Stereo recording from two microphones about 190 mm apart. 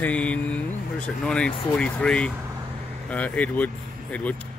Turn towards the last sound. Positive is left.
turn(degrees=5)  # may be behind; listen again after turning